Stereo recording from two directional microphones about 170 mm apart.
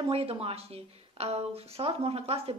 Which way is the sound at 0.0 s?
35° right (ahead or behind).